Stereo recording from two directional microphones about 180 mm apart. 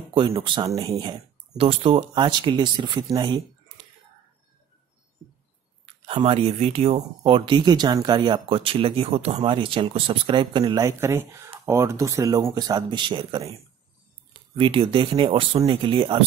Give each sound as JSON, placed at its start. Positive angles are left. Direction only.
{"t": 0.1, "sound": "speech", "side_deg": -25}
{"t": 5.9, "sound": "speech", "side_deg": -30}
{"t": 14.6, "sound": "speech", "side_deg": -30}